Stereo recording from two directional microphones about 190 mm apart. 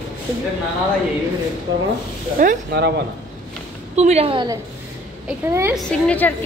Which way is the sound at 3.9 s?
35° right (ahead or behind).